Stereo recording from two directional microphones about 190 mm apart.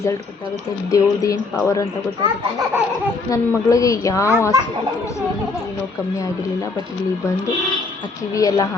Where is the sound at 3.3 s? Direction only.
15° left (ahead or behind).